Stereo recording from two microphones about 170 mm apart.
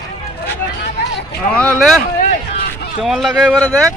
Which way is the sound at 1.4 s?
5° left (ahead or behind).